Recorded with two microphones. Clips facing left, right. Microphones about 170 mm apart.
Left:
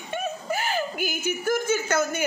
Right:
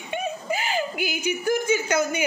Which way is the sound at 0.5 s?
15° right (ahead or behind).